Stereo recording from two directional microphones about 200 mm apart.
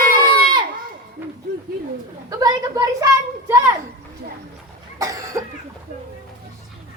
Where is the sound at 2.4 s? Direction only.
20° right (ahead or behind).